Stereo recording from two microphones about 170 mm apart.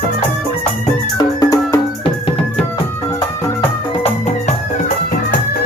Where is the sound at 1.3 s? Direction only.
20° left (ahead or behind).